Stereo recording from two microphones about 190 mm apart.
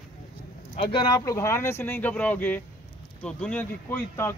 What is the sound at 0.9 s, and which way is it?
Speech, 20° left (ahead or behind).